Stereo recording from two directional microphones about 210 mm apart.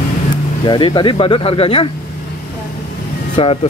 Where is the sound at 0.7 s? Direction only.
20° left (ahead or behind).